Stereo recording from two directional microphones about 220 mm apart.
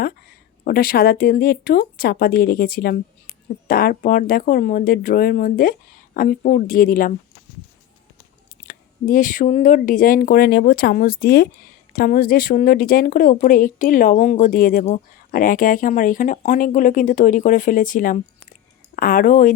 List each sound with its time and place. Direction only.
0.6 s speech: 40° left (ahead or behind)
8.6 s speech: 40° left (ahead or behind)